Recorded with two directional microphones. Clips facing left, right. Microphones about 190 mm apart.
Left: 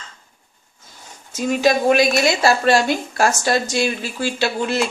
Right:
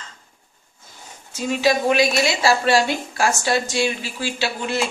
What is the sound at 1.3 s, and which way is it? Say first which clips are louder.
A woman's voice: left 2 dB; 45° left (ahead or behind).